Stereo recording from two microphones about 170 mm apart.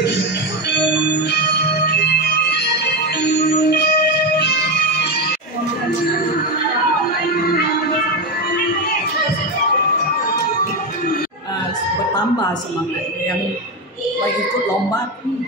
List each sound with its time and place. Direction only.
0.7 s music: 85° left
1.9 s music: 70° left (ahead or behind)